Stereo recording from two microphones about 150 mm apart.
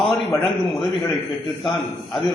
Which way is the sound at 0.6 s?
Centre (ahead or behind).